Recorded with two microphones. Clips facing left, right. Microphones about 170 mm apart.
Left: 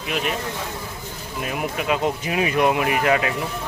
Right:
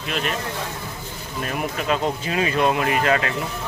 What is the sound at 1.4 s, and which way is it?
Speech, 10° left (ahead or behind).